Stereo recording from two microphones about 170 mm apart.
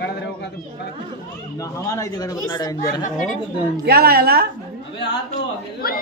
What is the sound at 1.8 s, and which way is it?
Speech, 20° left (ahead or behind).